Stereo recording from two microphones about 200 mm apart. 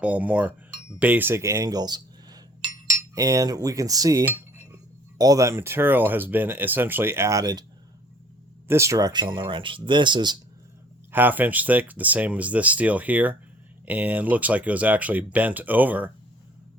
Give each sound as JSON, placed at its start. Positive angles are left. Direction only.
{"t": 0.0, "sound": "cutlery", "side_deg": -5}
{"t": 0.9, "sound": "speech", "side_deg": -10}
{"t": 3.2, "sound": "cutlery", "side_deg": -15}
{"t": 8.6, "sound": "speech", "side_deg": -15}
{"t": 11.1, "sound": "cutlery", "side_deg": -10}